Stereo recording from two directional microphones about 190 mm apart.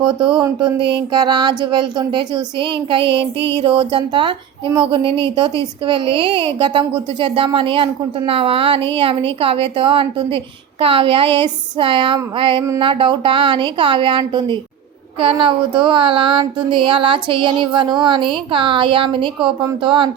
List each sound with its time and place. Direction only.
0.1 s a woman's voice: 25° right (ahead or behind)
3.0 s child singing: 65° right (ahead or behind)
3.6 s a woman's voice: 25° right (ahead or behind)